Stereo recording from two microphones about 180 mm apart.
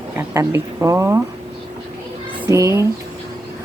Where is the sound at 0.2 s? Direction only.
15° right (ahead or behind).